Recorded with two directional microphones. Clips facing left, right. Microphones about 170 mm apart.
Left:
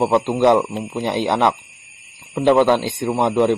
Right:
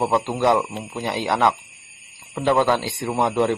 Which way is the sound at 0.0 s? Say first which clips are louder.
Left 5 dB; 20° left (ahead or behind).